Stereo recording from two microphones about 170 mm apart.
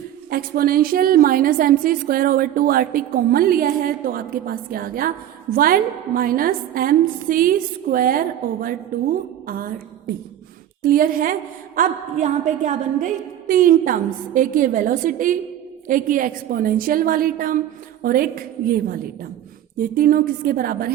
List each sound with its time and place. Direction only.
0.3 s a woman's voice: 60° right (ahead or behind)
10.8 s a woman's voice: 55° right (ahead or behind)
11.8 s a woman's voice: 45° right (ahead or behind); by 20.9 s 60° right (ahead or behind)